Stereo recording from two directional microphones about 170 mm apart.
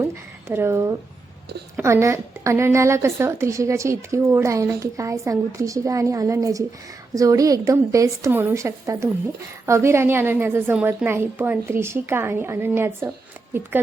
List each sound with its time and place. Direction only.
0.5 s a woman's voice: 15° right (ahead or behind)